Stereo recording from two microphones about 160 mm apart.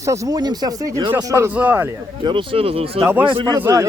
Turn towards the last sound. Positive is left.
turn(degrees=-30)  # may be behind; listen again after turning